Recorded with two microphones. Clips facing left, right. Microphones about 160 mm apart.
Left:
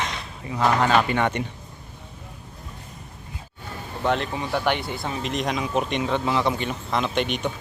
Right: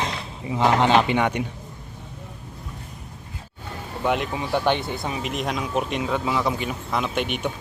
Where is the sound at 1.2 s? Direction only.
10° right (ahead or behind).